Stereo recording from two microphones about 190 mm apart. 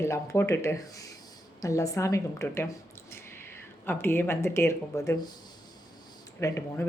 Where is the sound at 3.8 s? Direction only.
10° left (ahead or behind).